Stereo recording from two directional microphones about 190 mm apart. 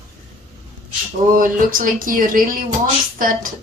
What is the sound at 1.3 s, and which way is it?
Speech, 45° right (ahead or behind).